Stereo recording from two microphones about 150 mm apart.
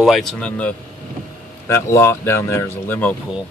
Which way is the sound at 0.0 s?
Centre (ahead or behind).